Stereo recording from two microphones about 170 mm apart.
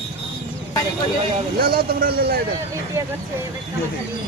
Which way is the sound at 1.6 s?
60° right (ahead or behind).